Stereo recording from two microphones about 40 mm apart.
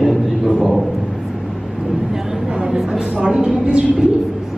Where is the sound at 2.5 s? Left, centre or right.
Right.